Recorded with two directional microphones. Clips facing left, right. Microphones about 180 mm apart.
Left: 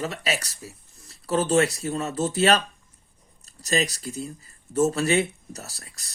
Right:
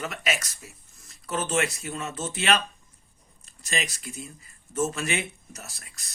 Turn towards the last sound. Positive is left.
turn(degrees=35)  # may be behind; listen again after turning